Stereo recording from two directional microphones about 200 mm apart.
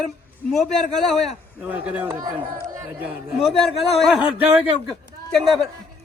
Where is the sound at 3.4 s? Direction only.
Centre (ahead or behind).